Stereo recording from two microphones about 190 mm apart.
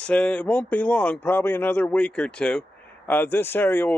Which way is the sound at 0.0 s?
5° left (ahead or behind).